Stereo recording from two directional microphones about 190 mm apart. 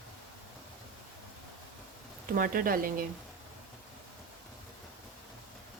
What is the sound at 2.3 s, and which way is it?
Speech, 50° right (ahead or behind).